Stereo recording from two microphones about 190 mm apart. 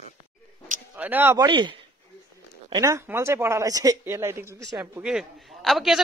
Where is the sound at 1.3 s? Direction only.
25° right (ahead or behind).